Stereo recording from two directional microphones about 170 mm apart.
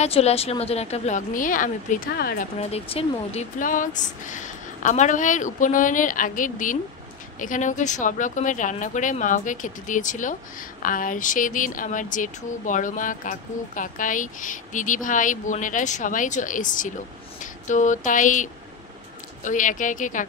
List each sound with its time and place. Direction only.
0.0 s a woman's voice: 40° left (ahead or behind); by 2.4 s 65° left (ahead or behind)
2.6 s speech: 35° left (ahead or behind)